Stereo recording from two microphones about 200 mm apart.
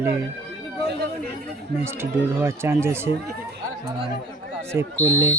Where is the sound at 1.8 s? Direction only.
10° right (ahead or behind).